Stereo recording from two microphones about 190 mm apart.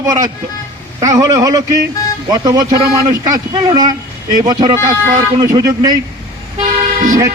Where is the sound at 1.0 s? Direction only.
15° right (ahead or behind).